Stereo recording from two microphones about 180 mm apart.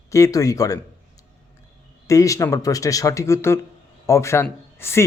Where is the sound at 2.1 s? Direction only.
20° left (ahead or behind).